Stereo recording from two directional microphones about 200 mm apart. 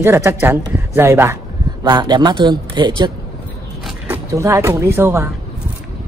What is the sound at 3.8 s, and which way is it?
Speech, 10° right (ahead or behind).